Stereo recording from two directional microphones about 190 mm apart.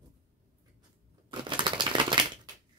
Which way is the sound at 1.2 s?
25° right (ahead or behind).